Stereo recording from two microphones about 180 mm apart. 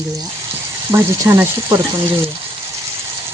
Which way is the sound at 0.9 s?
15° right (ahead or behind).